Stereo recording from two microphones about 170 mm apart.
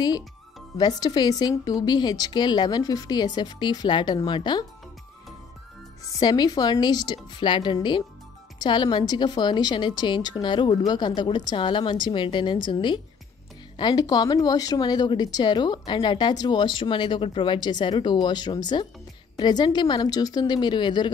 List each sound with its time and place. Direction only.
0.7 s speech: 25° left (ahead or behind)
6.1 s speech: 25° left (ahead or behind)